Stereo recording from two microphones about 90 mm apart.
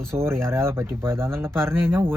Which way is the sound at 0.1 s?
30° right (ahead or behind).